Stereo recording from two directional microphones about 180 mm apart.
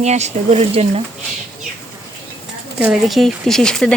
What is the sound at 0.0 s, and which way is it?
Speech, 40° right (ahead or behind).